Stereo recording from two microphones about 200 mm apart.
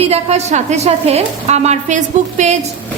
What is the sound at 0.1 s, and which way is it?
A woman's voice, 35° right (ahead or behind).